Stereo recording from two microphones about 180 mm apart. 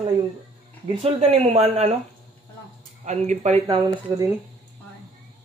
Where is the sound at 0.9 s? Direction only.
30° right (ahead or behind).